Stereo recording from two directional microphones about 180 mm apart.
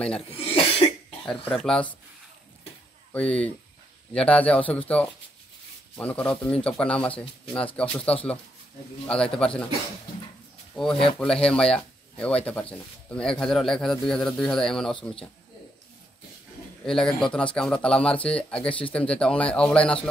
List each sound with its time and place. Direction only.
0.3 s cough: 30° left (ahead or behind)
1.6 s speech: 5° left (ahead or behind)
3.1 s speech: 5° left (ahead or behind)
10.7 s speech: centre (ahead or behind)
16.8 s speech: 5° left (ahead or behind)